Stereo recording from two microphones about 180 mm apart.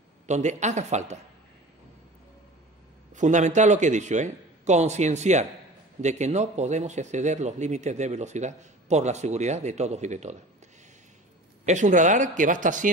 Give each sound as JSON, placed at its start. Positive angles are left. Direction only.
{"t": 0.3, "sound": "speech", "side_deg": -40}
{"t": 3.1, "sound": "speech", "side_deg": -40}
{"t": 11.6, "sound": "speech", "side_deg": -40}